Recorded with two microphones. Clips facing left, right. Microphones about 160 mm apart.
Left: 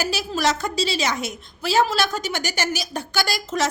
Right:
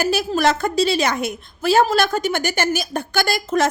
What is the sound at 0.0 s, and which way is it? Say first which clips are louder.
A woman's voice: right 5 dB; 55° right (ahead or behind).